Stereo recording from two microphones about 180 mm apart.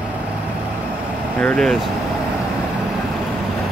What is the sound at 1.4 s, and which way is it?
Speech, 5° left (ahead or behind).